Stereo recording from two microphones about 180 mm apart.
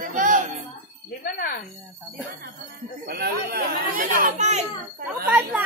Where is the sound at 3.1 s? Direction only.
60° right (ahead or behind); by 4.6 s 40° right (ahead or behind).